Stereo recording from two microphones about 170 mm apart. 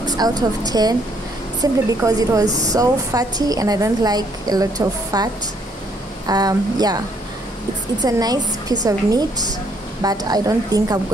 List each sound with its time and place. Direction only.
0.0 s a woman's voice: 25° right (ahead or behind)
8.0 s a woman's voice: 20° right (ahead or behind)